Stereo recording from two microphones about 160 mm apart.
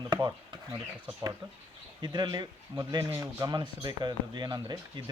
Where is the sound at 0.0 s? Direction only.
25° right (ahead or behind).